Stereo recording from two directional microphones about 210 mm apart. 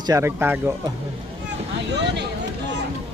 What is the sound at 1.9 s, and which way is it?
Speech, 55° right (ahead or behind).